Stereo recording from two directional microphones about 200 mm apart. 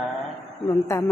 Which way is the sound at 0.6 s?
20° left (ahead or behind).